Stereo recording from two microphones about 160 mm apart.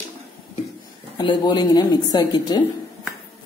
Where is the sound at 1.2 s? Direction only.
25° left (ahead or behind).